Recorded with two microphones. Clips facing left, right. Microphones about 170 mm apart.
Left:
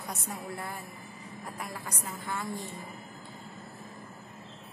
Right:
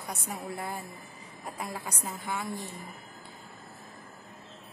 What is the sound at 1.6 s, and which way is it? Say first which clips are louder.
Speech: right 4 dB; 15° right (ahead or behind).